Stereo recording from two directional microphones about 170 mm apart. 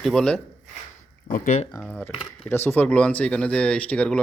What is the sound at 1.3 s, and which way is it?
Speech, 50° left (ahead or behind).